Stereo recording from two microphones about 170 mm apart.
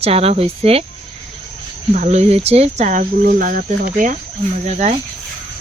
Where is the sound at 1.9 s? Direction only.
45° right (ahead or behind).